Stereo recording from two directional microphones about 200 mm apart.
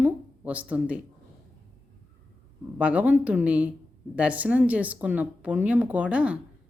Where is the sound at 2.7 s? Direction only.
5° right (ahead or behind).